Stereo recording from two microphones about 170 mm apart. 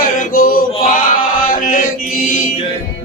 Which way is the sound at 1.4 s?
50° left (ahead or behind).